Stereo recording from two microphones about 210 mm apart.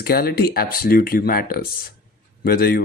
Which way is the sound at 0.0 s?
45° left (ahead or behind).